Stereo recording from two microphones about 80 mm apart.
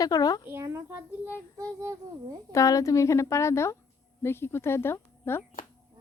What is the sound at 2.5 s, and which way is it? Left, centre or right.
Speech, left.